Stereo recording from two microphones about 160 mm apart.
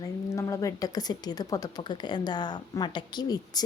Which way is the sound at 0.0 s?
20° left (ahead or behind).